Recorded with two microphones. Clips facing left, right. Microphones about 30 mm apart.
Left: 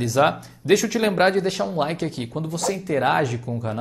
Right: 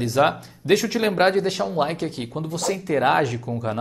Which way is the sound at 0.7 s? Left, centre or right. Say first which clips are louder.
Left 1 dB; right.